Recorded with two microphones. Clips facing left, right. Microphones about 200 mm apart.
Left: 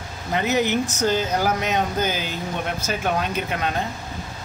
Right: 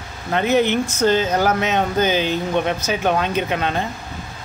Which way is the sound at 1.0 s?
10° left (ahead or behind).